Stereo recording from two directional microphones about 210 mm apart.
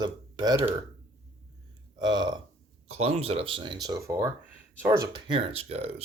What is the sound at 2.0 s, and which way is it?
Speech, 20° right (ahead or behind).